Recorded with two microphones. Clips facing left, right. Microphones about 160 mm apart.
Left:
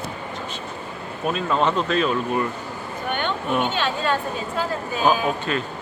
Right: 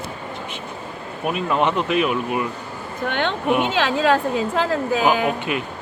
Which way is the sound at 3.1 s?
90° right.